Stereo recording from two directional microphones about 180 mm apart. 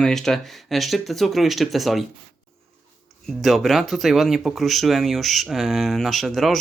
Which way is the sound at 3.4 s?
Centre (ahead or behind).